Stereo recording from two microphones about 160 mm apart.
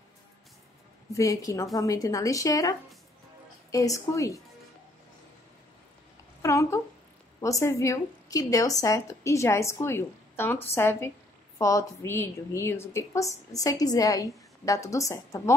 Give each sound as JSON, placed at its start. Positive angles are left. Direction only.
{"t": 1.1, "sound": "a woman's voice", "side_deg": 20}
{"t": 3.7, "sound": "a woman's voice", "side_deg": 20}
{"t": 6.4, "sound": "a woman's voice", "side_deg": 20}